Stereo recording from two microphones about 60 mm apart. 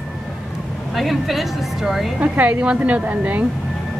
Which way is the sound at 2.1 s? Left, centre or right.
Right.